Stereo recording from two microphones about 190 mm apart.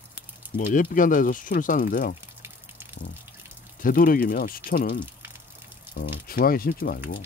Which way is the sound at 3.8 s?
50° left (ahead or behind).